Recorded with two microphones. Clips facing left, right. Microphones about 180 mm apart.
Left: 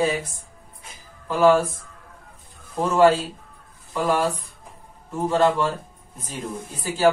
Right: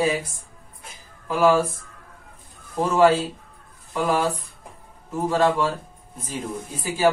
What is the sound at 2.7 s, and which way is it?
Speech, centre (ahead or behind).